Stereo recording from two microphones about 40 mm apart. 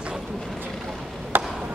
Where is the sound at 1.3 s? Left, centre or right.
Right.